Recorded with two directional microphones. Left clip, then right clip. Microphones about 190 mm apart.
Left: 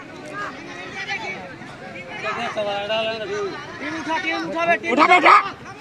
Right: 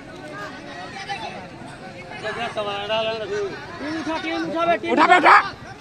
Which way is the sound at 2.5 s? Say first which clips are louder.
Even; 45° left (ahead or behind).